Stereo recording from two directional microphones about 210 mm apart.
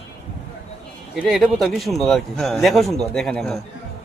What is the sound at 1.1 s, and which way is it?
Speech, centre (ahead or behind).